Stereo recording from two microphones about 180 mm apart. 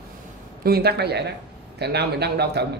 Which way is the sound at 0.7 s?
60° right (ahead or behind).